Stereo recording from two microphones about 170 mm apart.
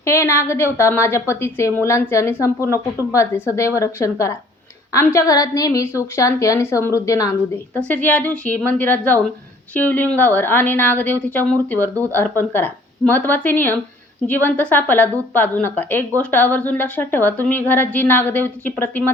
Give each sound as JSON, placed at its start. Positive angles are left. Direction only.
{"t": 0.0, "sound": "a woman's voice", "side_deg": 15}
{"t": 7.9, "sound": "a woman's voice", "side_deg": 10}